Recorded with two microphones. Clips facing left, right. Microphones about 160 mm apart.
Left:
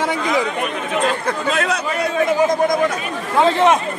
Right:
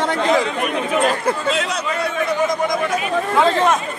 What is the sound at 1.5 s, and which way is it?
Speech, 55° left (ahead or behind).